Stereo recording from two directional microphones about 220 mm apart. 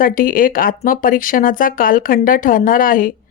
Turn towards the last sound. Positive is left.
turn(degrees=40)  # may be behind; listen again after turning